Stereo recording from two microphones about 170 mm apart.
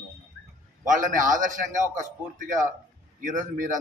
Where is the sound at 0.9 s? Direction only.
50° right (ahead or behind).